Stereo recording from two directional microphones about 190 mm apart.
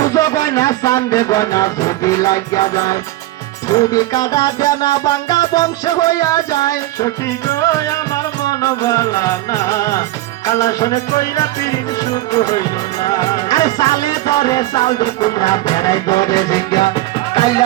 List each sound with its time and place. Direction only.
0.0 s music: 15° left (ahead or behind)